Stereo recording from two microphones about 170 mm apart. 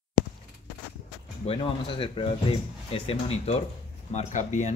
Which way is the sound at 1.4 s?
30° left (ahead or behind).